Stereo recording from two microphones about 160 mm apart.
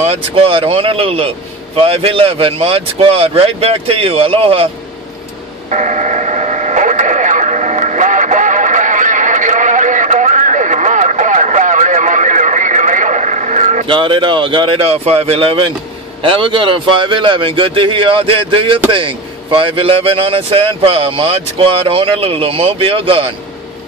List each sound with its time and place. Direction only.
0.0 s speech: 40° right (ahead or behind)
5.7 s radio: 50° right (ahead or behind)
13.8 s speech: 30° right (ahead or behind)